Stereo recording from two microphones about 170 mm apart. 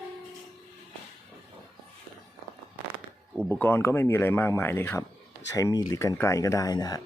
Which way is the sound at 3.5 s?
10° left (ahead or behind).